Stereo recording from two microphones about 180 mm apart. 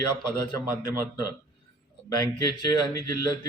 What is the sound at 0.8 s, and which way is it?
Speech, 20° left (ahead or behind).